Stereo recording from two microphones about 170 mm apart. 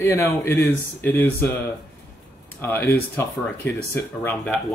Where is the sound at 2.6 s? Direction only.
10° left (ahead or behind).